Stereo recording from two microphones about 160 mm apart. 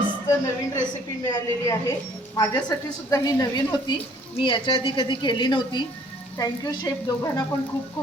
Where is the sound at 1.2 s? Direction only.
20° left (ahead or behind).